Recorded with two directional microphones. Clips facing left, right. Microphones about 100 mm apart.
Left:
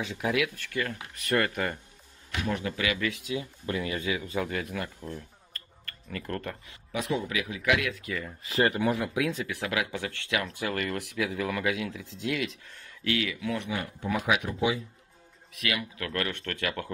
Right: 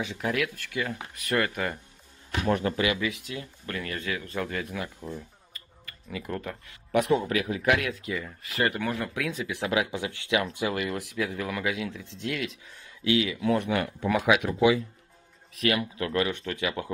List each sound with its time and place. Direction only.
0.0 s speech: centre (ahead or behind)
2.4 s a man's voice: 45° right (ahead or behind)
3.0 s speech: centre (ahead or behind)
3.3 s speech: 15° left (ahead or behind)
5.0 s a sound: 10° right (ahead or behind)
6.9 s a man's voice: 55° right (ahead or behind); by 8.0 s 40° right (ahead or behind)
8.4 s speech: 25° left (ahead or behind)
8.8 s speech: 10° left (ahead or behind)
9.5 s speech: 20° right (ahead or behind); by 12.7 s centre (ahead or behind)
12.7 s speech: 20° right (ahead or behind)
13.4 s speech: 35° right (ahead or behind)
13.7 s speech: 85° right
15.5 s speech: 35° right (ahead or behind)
16.1 s speech: 15° right (ahead or behind)